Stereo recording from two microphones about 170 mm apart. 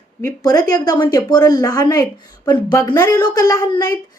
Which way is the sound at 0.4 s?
20° left (ahead or behind).